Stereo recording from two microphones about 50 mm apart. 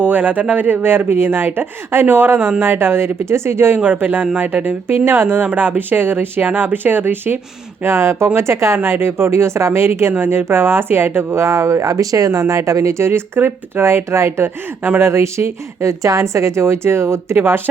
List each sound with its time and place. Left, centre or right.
0.0 s a woman's voice: right
3.9 s speech: right
4.9 s a woman's voice: right
5.5 s speech: right
7.9 s a woman's voice: right
17.3 s speech: right